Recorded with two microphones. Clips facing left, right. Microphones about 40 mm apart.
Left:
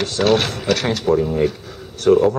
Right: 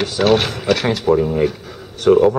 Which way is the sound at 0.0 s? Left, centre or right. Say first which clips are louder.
Right 2 dB; centre.